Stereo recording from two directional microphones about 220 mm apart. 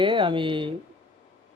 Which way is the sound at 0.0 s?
20° right (ahead or behind).